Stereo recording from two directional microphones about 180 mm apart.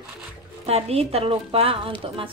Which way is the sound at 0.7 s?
35° right (ahead or behind).